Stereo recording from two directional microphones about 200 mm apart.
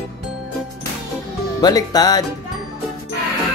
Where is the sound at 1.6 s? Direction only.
20° left (ahead or behind).